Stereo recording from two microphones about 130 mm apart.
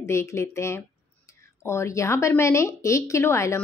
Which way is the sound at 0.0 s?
20° left (ahead or behind).